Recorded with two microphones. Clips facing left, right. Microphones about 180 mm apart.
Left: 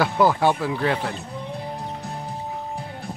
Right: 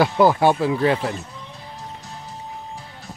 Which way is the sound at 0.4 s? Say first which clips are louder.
Right 3 dB; 15° right (ahead or behind).